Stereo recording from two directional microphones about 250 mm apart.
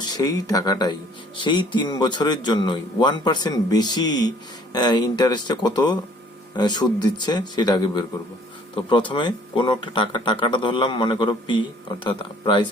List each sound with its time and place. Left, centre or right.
0.0 s speech: centre